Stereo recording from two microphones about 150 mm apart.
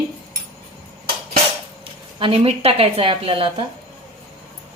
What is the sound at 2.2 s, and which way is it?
A woman's voice, 40° right (ahead or behind).